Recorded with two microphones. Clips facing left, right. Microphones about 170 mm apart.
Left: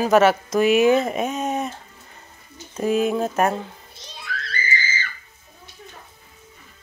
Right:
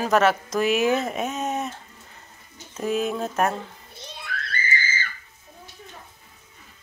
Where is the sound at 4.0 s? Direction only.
55° right (ahead or behind).